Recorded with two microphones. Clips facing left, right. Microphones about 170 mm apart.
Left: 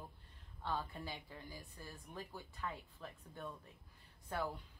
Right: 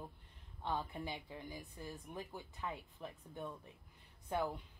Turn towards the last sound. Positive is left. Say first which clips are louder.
# right 3 dB
turn(degrees=-20)  # may be behind; listen again after turning